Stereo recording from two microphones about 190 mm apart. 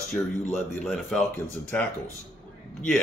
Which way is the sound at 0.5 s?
Centre (ahead or behind).